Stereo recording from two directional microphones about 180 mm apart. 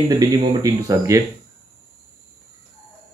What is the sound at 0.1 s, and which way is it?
Speech, 20° right (ahead or behind).